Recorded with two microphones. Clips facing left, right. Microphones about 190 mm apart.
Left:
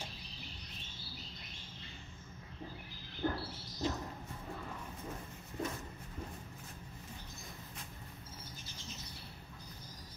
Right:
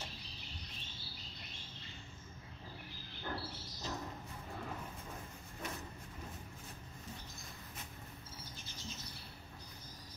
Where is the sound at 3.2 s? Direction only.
40° left (ahead or behind).